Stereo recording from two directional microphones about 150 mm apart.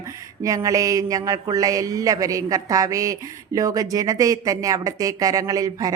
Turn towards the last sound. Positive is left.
turn(degrees=-25)  # may be behind; listen again after turning